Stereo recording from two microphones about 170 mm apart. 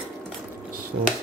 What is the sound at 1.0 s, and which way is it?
Speech, 75° right (ahead or behind).